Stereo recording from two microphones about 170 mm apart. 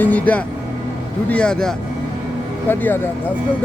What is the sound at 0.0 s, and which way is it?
Music, 10° left (ahead or behind).